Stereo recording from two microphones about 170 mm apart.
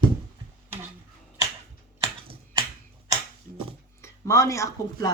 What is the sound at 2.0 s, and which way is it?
Typewriter, 30° right (ahead or behind).